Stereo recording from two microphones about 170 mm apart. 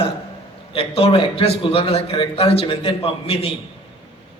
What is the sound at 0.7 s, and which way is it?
A man's voice, 35° left (ahead or behind).